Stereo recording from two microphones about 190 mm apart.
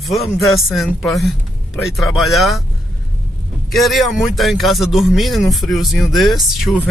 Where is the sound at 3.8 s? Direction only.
Centre (ahead or behind).